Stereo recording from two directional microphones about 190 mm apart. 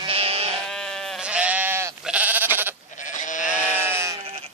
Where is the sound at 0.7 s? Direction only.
5° left (ahead or behind); by 1.9 s 15° right (ahead or behind).